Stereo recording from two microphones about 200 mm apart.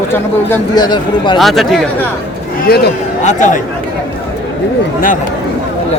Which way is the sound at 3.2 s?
40° left (ahead or behind).